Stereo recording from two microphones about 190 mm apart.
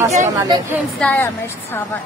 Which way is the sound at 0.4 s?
15° right (ahead or behind).